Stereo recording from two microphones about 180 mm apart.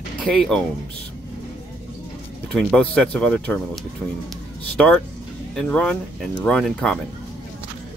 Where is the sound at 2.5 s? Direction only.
5° left (ahead or behind).